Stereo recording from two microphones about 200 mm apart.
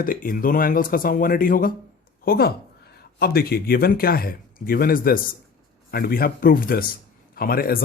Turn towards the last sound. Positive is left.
turn(degrees=45)  # may be behind; listen again after turning